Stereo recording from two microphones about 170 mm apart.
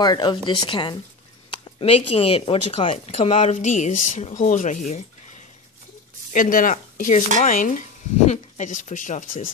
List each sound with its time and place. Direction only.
0.0 s speech: 25° left (ahead or behind); by 5.0 s 45° left (ahead or behind)
6.3 s speech: 55° left (ahead or behind)